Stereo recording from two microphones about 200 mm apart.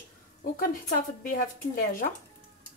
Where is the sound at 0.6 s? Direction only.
45° left (ahead or behind).